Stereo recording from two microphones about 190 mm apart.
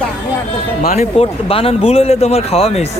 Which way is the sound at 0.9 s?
35° left (ahead or behind).